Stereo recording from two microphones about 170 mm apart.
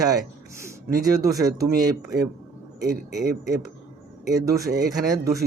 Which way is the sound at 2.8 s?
75° right (ahead or behind).